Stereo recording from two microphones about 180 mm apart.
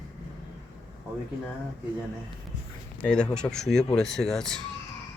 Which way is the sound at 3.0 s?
5° left (ahead or behind).